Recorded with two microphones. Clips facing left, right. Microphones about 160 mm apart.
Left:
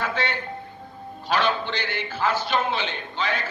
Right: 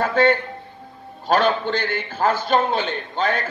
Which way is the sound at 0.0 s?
50° right (ahead or behind).